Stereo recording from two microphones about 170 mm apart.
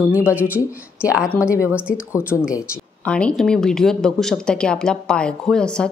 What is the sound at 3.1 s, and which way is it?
Speech, 5° left (ahead or behind).